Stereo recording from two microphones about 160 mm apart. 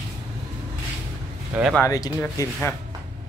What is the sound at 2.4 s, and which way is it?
Speech, 25° left (ahead or behind).